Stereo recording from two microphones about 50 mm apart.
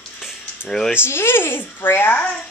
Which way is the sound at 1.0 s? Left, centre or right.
Left.